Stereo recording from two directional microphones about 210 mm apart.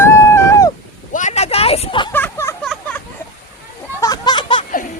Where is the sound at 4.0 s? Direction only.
20° left (ahead or behind).